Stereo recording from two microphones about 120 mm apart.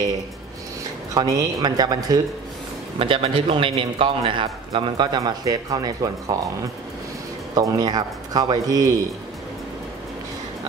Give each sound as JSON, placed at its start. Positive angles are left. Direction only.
{"t": 1.1, "sound": "speech", "side_deg": -30}
{"t": 3.0, "sound": "a man's voice", "side_deg": -45}
{"t": 7.5, "sound": "speech", "side_deg": -30}